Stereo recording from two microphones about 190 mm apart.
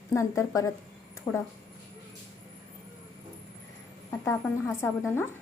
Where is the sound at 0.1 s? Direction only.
15° left (ahead or behind).